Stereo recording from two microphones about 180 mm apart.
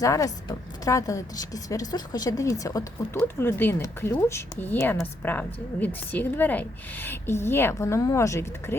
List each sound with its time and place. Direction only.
0.0 s a woman's voice: 20° left (ahead or behind)